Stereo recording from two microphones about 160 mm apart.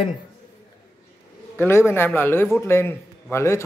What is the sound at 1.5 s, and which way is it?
A man's voice, 15° left (ahead or behind).